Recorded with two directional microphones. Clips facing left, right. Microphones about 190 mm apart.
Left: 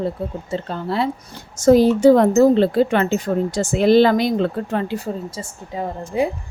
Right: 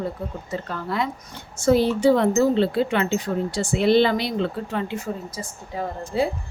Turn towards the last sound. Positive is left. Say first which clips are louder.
# left 3 dB
turn(degrees=20)  # may be behind; listen again after turning